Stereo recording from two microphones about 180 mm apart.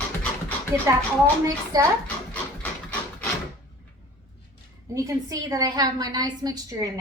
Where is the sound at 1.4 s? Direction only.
20° right (ahead or behind).